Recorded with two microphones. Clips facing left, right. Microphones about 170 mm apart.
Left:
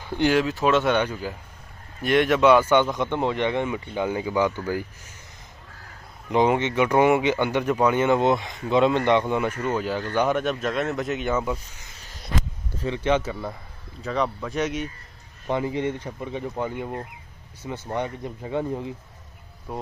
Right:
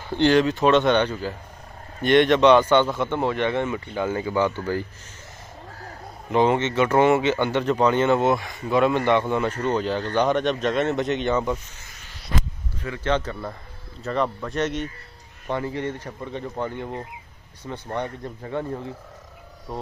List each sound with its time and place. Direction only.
0.1 s speech: 10° left (ahead or behind)
6.3 s speech: 15° left (ahead or behind)
12.8 s speech: 20° left (ahead or behind)
13.1 s speech: 5° left (ahead or behind)
15.4 s speech: 15° left (ahead or behind)
19.7 s speech: 5° left (ahead or behind)